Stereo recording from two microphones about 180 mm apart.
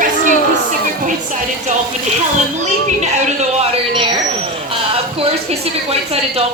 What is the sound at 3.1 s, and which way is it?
Speech, 35° right (ahead or behind).